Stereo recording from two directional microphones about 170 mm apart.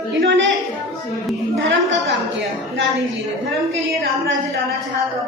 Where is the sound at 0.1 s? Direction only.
90° right.